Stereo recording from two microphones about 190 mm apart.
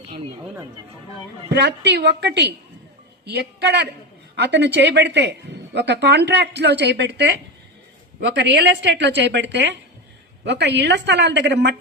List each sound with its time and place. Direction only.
1.5 s a woman's voice: 65° right (ahead or behind)